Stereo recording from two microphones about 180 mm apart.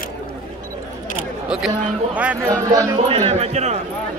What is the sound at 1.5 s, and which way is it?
Speech, 5° right (ahead or behind).